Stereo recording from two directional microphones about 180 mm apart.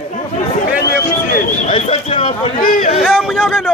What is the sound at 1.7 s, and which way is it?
Speech, 30° left (ahead or behind).